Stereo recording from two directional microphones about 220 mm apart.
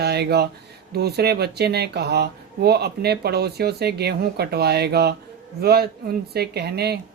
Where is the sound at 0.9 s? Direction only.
45° right (ahead or behind).